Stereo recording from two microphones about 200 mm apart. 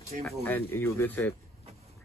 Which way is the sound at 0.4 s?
10° left (ahead or behind).